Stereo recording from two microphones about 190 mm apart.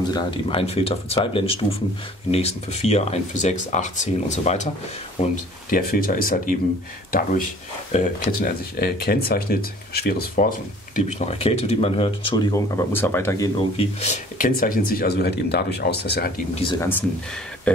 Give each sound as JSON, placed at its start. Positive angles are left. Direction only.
{"t": 0.1, "sound": "speech", "side_deg": 25}
{"t": 5.3, "sound": "speech", "side_deg": 50}
{"t": 11.0, "sound": "speech", "side_deg": 35}
{"t": 13.6, "sound": "speech", "side_deg": 35}